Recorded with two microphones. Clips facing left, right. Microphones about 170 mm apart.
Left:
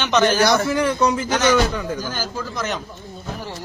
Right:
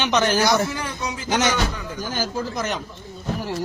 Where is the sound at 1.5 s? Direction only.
55° left (ahead or behind).